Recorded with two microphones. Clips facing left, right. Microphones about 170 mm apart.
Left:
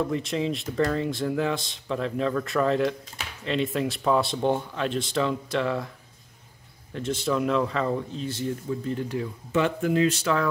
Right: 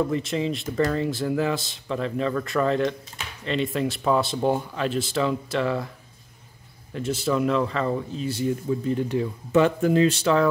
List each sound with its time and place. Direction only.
0.0 s speech: centre (ahead or behind)
6.9 s speech: 5° right (ahead or behind)
9.5 s speech: 40° right (ahead or behind)